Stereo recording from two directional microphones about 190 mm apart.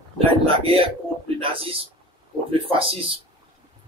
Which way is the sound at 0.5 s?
30° right (ahead or behind).